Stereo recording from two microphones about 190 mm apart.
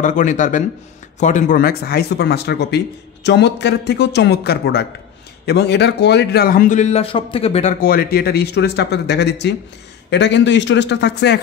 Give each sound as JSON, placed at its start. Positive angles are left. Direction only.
{"t": 0.0, "sound": "speech", "side_deg": 40}
{"t": 7.8, "sound": "speech", "side_deg": 50}